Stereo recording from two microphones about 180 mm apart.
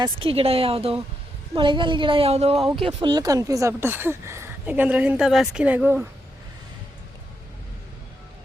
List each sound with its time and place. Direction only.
0.0 s a woman's voice: 30° right (ahead or behind); by 6.1 s 10° right (ahead or behind)